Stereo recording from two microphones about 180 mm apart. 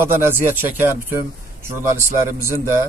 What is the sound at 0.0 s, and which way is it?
A man's voice, 10° right (ahead or behind).